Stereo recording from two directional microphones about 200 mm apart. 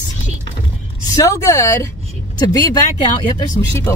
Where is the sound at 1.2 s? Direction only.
15° left (ahead or behind).